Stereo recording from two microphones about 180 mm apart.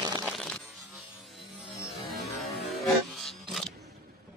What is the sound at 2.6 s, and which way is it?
Music, centre (ahead or behind).